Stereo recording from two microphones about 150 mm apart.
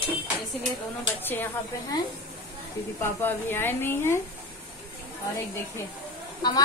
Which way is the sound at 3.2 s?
15° left (ahead or behind).